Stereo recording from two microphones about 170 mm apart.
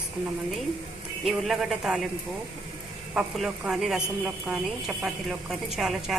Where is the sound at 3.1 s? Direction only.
5° right (ahead or behind).